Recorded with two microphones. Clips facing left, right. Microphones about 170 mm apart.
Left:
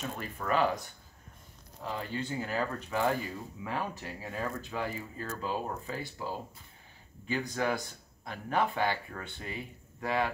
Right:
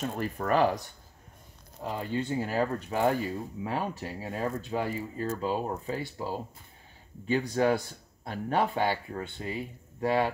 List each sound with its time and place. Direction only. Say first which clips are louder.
0.0 s speech: right 6 dB; 45° right (ahead or behind)
1.8 s speech: right 4 dB; 25° right (ahead or behind)
2.4 s speech: right 5 dB; 35° right (ahead or behind)